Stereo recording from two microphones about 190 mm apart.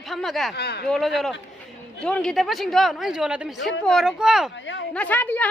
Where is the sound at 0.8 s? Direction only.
Centre (ahead or behind).